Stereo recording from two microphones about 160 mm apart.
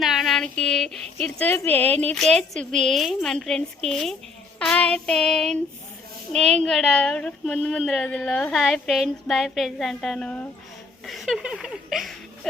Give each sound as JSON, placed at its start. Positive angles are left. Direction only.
{"t": 0.0, "sound": "speech", "side_deg": 0}